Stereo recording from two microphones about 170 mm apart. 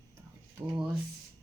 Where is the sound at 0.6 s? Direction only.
10° right (ahead or behind).